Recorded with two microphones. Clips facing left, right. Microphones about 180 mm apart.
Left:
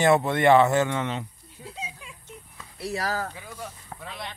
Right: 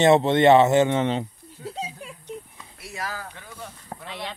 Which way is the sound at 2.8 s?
35° left (ahead or behind).